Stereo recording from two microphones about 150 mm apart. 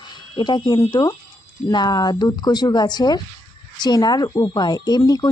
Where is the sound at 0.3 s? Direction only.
30° left (ahead or behind).